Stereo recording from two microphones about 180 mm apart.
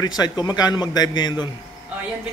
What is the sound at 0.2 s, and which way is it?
A man's voice, 20° left (ahead or behind).